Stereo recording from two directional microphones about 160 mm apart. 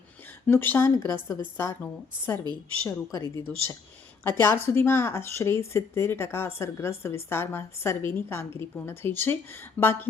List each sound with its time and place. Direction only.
0.4 s speech: 10° left (ahead or behind)
2.4 s a woman's voice: 25° right (ahead or behind)
2.8 s a woman's voice: 20° left (ahead or behind)